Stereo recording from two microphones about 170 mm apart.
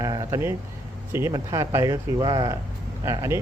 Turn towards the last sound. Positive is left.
turn(degrees=-20)  # may be behind; listen again after turning